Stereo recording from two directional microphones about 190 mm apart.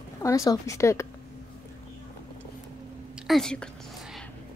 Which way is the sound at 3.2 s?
Centre (ahead or behind).